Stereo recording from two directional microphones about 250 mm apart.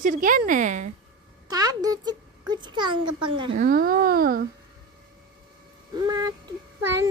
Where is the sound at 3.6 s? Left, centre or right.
Right.